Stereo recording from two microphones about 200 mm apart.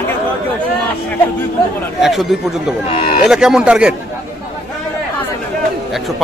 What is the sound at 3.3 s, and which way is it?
Speech, 5° right (ahead or behind).